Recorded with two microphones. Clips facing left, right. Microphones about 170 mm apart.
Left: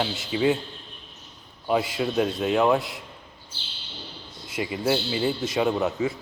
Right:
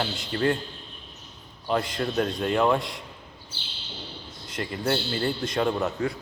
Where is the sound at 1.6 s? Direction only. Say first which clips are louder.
Left 2 dB; 5° left (ahead or behind).